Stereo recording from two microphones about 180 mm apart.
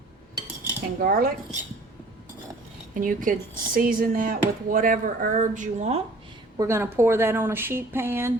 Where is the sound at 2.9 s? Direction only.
50° right (ahead or behind).